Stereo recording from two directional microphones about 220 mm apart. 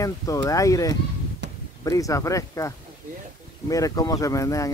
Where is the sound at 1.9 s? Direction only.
15° left (ahead or behind).